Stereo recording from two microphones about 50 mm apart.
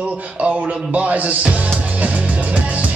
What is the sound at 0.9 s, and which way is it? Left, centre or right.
Music, right.